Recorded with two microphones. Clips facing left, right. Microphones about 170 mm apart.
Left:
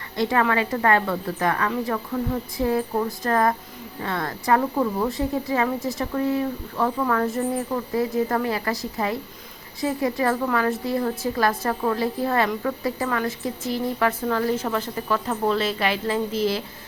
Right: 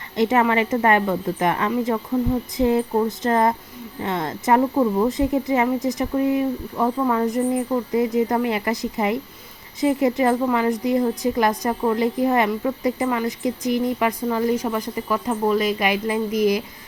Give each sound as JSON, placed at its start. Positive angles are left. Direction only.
{"t": 0.2, "sound": "a woman's voice", "side_deg": -20}